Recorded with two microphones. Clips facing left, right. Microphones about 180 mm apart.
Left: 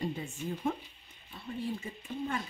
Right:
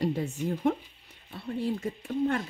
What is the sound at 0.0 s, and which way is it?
Speech, 75° right (ahead or behind).